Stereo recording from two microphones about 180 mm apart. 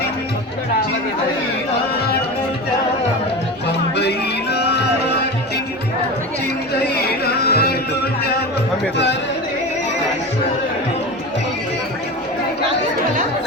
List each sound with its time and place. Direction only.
3.7 s music: 70° left (ahead or behind)
6.7 s music: 65° left (ahead or behind)